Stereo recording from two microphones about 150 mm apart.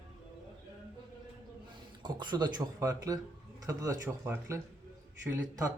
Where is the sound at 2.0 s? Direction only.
30° right (ahead or behind).